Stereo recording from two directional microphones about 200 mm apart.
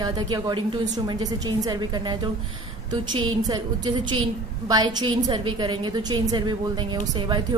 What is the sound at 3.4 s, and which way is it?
A woman's voice, 20° right (ahead or behind).